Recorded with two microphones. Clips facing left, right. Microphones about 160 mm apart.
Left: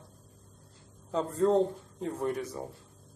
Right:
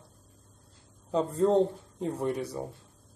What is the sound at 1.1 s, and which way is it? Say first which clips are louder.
Speech: right 2 dB; 10° right (ahead or behind).